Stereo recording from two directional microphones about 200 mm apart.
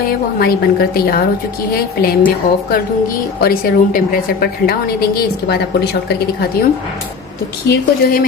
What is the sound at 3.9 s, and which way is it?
A woman's voice, 50° left (ahead or behind).